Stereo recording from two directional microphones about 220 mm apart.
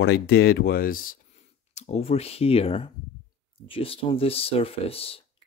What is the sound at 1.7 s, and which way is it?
Speech, 30° left (ahead or behind).